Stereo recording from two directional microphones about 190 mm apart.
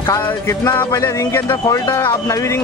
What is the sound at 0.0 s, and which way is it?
Speech, 15° left (ahead or behind).